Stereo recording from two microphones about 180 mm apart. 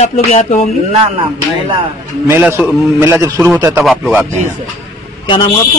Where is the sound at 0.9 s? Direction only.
30° right (ahead or behind).